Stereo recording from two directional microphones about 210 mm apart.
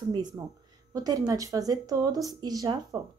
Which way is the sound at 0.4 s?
15° right (ahead or behind).